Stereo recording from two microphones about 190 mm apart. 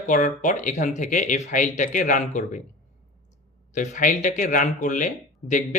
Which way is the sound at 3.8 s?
40° left (ahead or behind).